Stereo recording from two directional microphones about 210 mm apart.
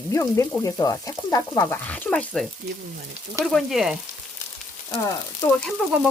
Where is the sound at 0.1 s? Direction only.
15° left (ahead or behind).